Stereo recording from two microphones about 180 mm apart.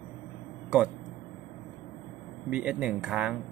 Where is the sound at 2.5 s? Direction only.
5° right (ahead or behind).